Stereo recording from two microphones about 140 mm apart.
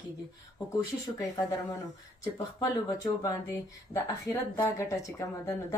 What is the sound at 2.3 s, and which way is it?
Speech, 25° left (ahead or behind).